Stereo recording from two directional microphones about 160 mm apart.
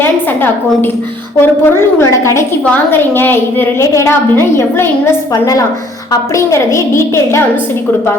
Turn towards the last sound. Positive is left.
turn(degrees=15)  # may be behind; listen again after turning